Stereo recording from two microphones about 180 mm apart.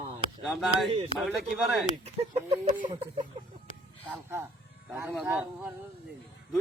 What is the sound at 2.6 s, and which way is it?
Speech, 45° right (ahead or behind).